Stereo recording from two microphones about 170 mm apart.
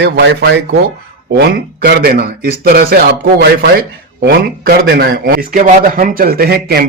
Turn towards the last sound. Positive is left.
turn(degrees=-70)  # may be behind; listen again after turning